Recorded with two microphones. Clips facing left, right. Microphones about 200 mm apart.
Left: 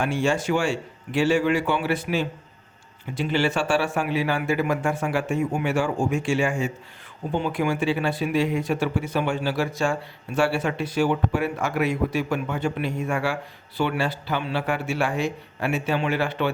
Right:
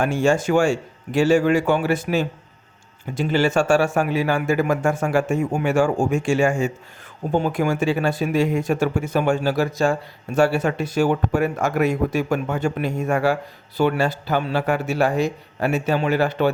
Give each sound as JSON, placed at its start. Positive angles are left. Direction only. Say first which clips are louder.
{"t": 0.0, "sound": "speech", "louder": "right 4 dB", "side_deg": -45}